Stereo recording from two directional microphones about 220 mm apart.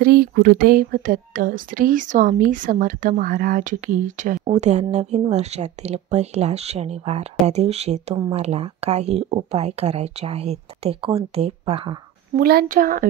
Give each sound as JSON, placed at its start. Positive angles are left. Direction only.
{"t": 0.0, "sound": "speech", "side_deg": -45}
{"t": 12.4, "sound": "speech", "side_deg": -45}